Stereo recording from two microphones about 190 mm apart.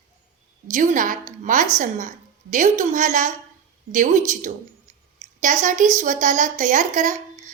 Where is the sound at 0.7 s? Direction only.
40° right (ahead or behind).